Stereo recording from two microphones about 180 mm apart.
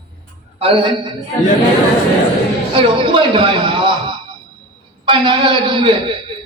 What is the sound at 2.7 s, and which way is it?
A man's voice, 30° right (ahead or behind).